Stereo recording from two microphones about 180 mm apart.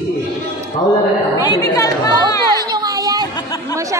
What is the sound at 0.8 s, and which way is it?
Speech, 25° left (ahead or behind).